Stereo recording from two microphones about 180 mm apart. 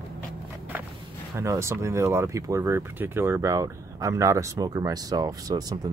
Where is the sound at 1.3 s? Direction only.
15° right (ahead or behind).